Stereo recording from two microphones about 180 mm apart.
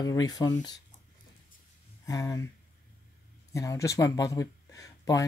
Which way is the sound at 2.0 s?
20° left (ahead or behind).